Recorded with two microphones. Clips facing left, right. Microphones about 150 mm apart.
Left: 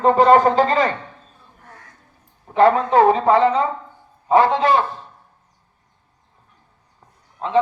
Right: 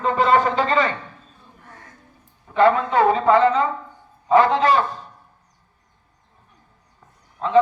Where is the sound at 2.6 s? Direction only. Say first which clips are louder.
Left 3 dB; 40° left (ahead or behind).